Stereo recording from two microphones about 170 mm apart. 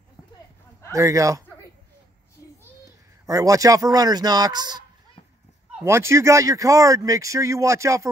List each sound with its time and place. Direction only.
0.9 s speech: 20° right (ahead or behind)
3.3 s speech: 20° right (ahead or behind)
5.9 s speech: 15° right (ahead or behind)